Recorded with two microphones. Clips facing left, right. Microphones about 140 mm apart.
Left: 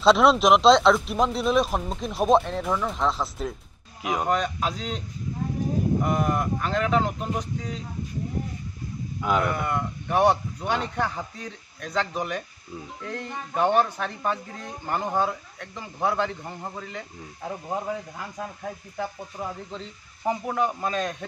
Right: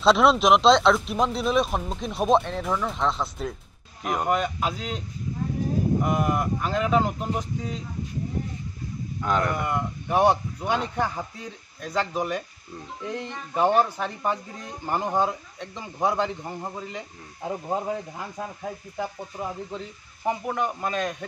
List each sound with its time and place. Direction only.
0.0 s speech: centre (ahead or behind)
6.0 s speech: 5° right (ahead or behind)
9.2 s speech: 5° left (ahead or behind)
9.6 s speech: 5° right (ahead or behind)
13.6 s speech: 10° right (ahead or behind)